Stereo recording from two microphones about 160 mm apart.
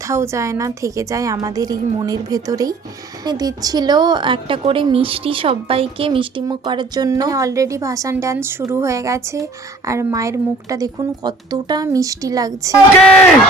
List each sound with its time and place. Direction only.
0.1 s a woman's voice: 15° right (ahead or behind)